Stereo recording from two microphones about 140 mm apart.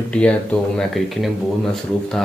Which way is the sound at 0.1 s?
10° left (ahead or behind).